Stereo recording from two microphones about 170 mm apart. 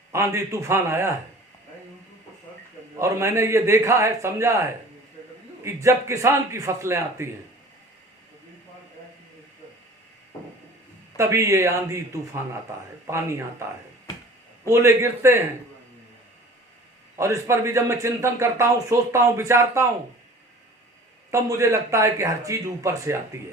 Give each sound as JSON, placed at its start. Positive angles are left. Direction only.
{"t": 0.1, "sound": "speech", "side_deg": -15}
{"t": 3.0, "sound": "speech", "side_deg": -15}
{"t": 11.2, "sound": "speech", "side_deg": -15}
{"t": 14.7, "sound": "speech", "side_deg": -15}
{"t": 17.2, "sound": "speech", "side_deg": -15}
{"t": 21.2, "sound": "speech", "side_deg": -20}